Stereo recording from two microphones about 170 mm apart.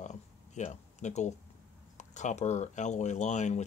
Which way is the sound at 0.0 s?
45° left (ahead or behind).